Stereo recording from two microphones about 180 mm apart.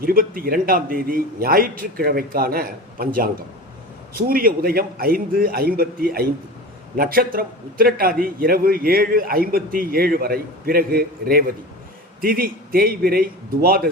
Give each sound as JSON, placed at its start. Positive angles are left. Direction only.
{"t": 0.0, "sound": "a man's voice", "side_deg": -55}
{"t": 4.3, "sound": "a man's voice", "side_deg": -55}